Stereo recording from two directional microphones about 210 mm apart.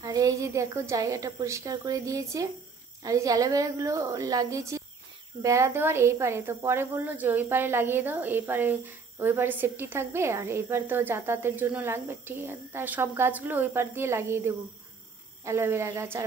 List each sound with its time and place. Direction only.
0.0 s speech: 15° right (ahead or behind)